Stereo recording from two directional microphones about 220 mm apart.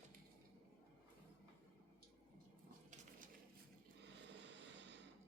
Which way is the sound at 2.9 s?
35° right (ahead or behind).